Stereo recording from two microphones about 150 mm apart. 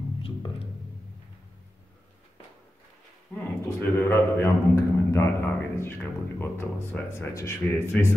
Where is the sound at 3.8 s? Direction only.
15° left (ahead or behind).